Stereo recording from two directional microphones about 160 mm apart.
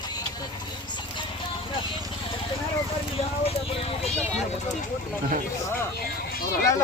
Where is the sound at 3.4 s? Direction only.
40° left (ahead or behind).